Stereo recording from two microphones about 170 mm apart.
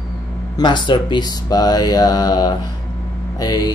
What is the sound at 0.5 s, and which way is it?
Speech, 25° left (ahead or behind).